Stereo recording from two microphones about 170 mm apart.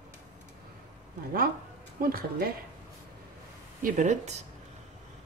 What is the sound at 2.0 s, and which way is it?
Speech, 60° right (ahead or behind).